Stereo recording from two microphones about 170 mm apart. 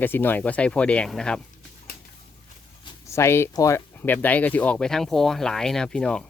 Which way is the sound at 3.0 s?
15° left (ahead or behind).